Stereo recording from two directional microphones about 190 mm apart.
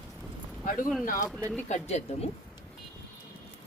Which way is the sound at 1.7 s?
35° left (ahead or behind).